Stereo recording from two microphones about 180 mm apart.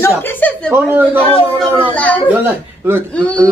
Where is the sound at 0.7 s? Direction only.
10° right (ahead or behind).